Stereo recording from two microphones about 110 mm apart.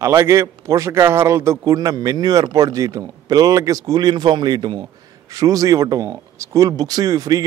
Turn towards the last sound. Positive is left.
turn(degrees=-35)  # may be behind; listen again after turning